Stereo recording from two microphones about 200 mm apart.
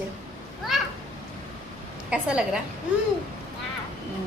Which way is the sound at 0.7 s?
Centre (ahead or behind).